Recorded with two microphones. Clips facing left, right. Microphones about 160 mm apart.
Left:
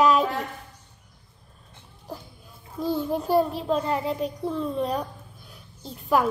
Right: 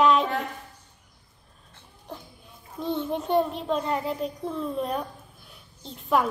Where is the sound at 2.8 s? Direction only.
Centre (ahead or behind).